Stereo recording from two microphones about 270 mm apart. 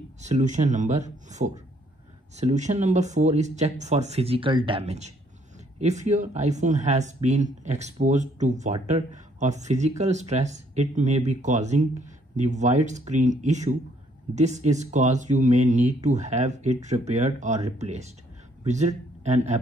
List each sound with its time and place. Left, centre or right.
0.2 s a man's voice: right